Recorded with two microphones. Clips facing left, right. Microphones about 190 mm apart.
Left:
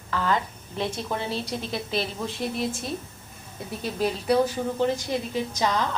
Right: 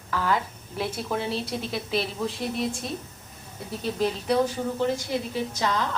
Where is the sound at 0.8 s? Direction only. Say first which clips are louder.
Even; 5° right (ahead or behind).